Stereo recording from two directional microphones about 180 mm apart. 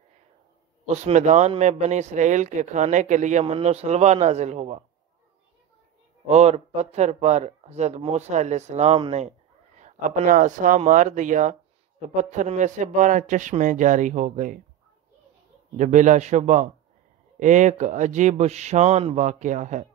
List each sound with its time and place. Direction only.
0.8 s a man's voice: 40° right (ahead or behind)
6.2 s a man's voice: 35° right (ahead or behind)
15.8 s a man's voice: 45° right (ahead or behind)